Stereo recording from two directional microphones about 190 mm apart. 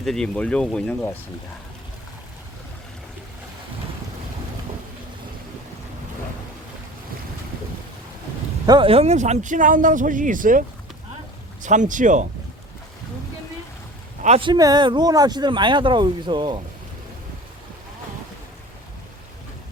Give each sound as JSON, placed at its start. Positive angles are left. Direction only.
{"t": 0.0, "sound": "speech", "side_deg": 5}
{"t": 8.6, "sound": "speech", "side_deg": -25}
{"t": 11.6, "sound": "speech", "side_deg": -40}
{"t": 14.2, "sound": "speech", "side_deg": -30}